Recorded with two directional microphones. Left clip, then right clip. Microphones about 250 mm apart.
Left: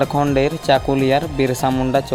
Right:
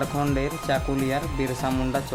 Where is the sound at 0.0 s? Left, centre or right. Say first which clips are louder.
Left 9 dB; left.